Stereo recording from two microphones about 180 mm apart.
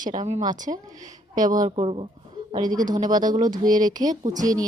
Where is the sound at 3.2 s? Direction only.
45° right (ahead or behind).